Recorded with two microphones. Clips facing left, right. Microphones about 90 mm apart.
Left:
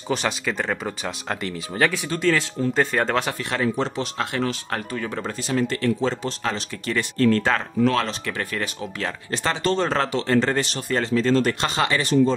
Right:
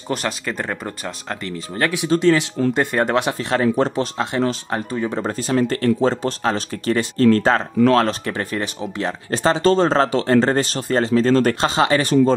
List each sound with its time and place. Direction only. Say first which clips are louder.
0.1 s speech: even; centre (ahead or behind)
2.0 s speech: right 6 dB; 20° right (ahead or behind)
3.3 s speech: right 5 dB; 30° right (ahead or behind)
3.7 s speech: right 6 dB; 45° right (ahead or behind)
4.2 s speech: right 3 dB; 25° right (ahead or behind)
5.2 s speech: right 4 dB; 40° right (ahead or behind)
8.3 s speech: right 4 dB; 30° right (ahead or behind)
11.6 s speech: right 5 dB; 30° right (ahead or behind)